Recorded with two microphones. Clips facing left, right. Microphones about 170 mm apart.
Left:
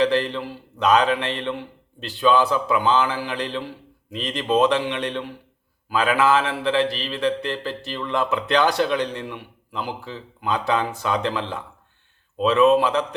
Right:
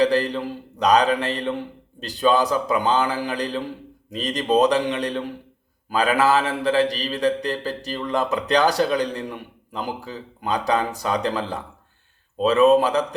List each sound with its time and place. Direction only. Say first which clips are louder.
0.0 s speech: right 1 dB; 40° right (ahead or behind)